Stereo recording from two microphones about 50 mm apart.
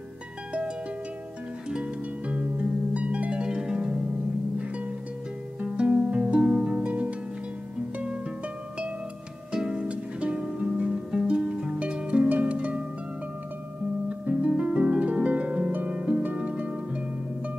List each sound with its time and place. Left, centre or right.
1.7 s harp: right
5.6 s music: right
9.5 s music: centre
12.3 s harp: right
14.0 s music: right
14.5 s harp: right